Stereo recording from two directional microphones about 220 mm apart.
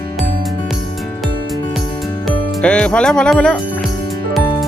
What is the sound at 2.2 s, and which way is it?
Speech, 5° left (ahead or behind).